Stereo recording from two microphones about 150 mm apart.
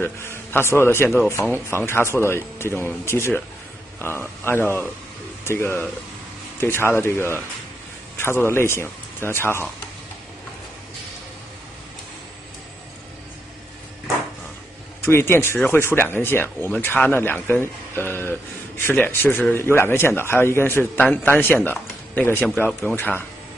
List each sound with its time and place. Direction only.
0.0 s a man's voice: 15° left (ahead or behind)
15.0 s speech: 15° left (ahead or behind)
22.9 s speech: 15° left (ahead or behind)